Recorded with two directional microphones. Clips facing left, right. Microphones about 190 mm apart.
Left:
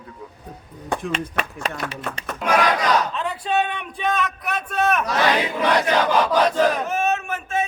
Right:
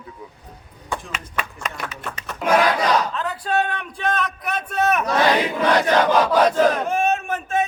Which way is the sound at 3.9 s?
10° left (ahead or behind).